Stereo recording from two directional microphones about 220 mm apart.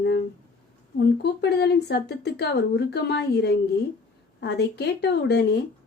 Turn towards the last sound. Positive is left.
turn(degrees=50)  # may be behind; listen again after turning